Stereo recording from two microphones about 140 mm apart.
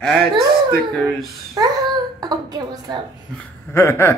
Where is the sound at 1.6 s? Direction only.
25° right (ahead or behind).